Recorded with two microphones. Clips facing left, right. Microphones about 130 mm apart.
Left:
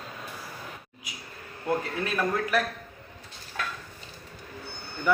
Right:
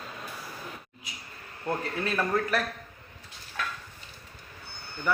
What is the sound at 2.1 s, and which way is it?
Speech, 5° left (ahead or behind).